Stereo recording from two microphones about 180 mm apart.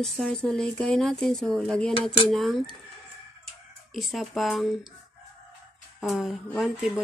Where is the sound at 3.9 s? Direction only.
Centre (ahead or behind).